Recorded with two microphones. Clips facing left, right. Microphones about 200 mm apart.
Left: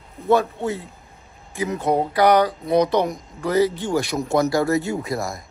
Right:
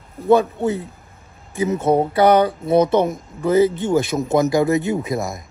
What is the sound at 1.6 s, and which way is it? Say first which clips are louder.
Speech: right 4 dB; 20° right (ahead or behind).